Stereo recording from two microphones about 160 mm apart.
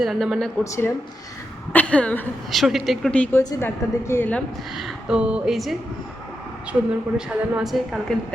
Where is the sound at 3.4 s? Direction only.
25° left (ahead or behind).